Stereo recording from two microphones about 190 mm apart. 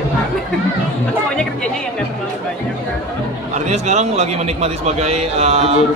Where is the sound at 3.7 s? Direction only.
35° right (ahead or behind).